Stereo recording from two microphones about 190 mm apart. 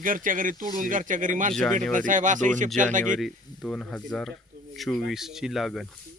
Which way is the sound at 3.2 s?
Centre (ahead or behind).